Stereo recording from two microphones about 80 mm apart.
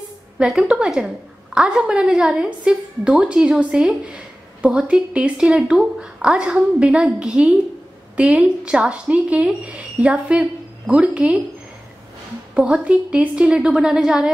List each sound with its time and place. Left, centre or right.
0.4 s a woman's voice: centre
12.5 s a woman's voice: centre